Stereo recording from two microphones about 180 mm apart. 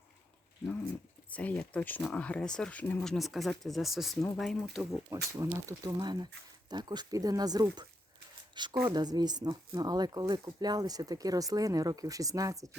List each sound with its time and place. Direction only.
1.3 s speech: 5° left (ahead or behind)
5.4 s speech: 15° right (ahead or behind)